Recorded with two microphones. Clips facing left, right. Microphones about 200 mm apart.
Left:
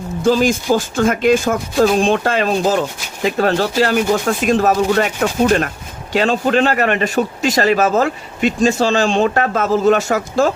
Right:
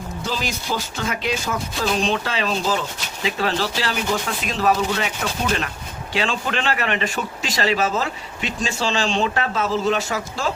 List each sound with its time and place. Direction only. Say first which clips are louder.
0.2 s a man's voice: left 14 dB; 50° left (ahead or behind)